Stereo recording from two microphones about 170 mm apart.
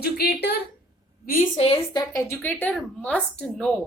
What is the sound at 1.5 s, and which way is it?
Speech, 35° left (ahead or behind).